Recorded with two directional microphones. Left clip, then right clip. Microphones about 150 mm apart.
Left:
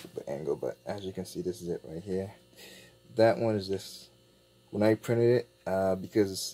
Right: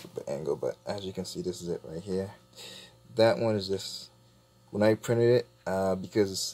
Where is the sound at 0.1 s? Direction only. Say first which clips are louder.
Right 1 dB; 15° left (ahead or behind).